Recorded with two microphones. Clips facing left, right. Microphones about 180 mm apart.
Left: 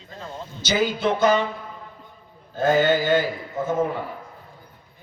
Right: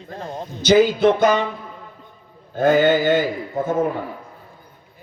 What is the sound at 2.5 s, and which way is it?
Speech, 60° right (ahead or behind).